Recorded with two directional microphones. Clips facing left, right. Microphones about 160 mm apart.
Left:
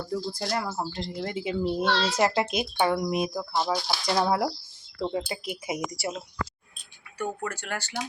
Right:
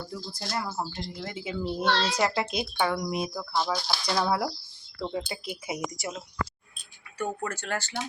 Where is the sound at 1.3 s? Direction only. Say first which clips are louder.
Left 4 dB; 20° left (ahead or behind).